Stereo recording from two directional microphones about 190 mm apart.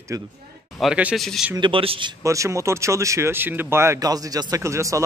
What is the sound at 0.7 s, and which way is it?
Speech, 5° right (ahead or behind).